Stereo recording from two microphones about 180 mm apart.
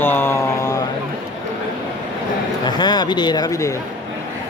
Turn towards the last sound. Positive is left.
turn(degrees=20)  # may be behind; listen again after turning